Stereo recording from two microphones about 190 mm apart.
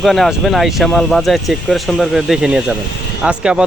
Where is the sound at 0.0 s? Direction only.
Centre (ahead or behind).